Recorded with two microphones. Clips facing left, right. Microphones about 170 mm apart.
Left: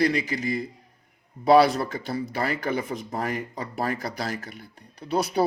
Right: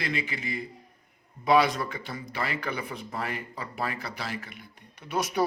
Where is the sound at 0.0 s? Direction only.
40° left (ahead or behind).